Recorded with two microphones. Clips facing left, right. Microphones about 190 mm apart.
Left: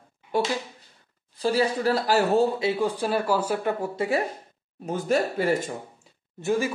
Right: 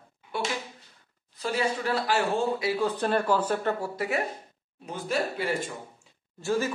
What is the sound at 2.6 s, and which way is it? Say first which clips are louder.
Speech: left 3 dB; 25° left (ahead or behind).